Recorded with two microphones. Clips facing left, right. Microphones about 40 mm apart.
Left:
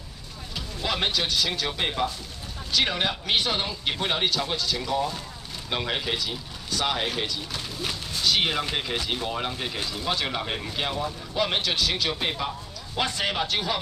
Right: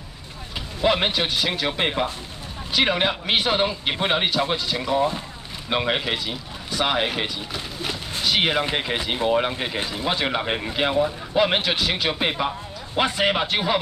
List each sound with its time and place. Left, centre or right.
0.8 s speech: right